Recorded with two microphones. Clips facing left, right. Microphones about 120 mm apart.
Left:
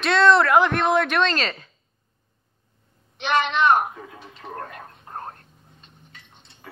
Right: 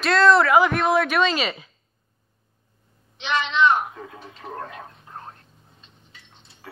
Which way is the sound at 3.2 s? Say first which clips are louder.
Left 1 dB; 50° left (ahead or behind).